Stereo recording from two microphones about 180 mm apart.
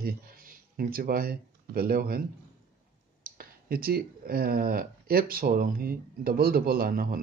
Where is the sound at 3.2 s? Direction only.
55° right (ahead or behind).